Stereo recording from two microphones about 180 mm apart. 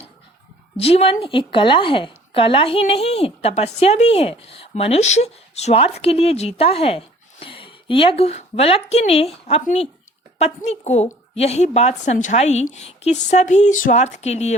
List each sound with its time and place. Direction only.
0.8 s a woman's voice: 35° left (ahead or behind)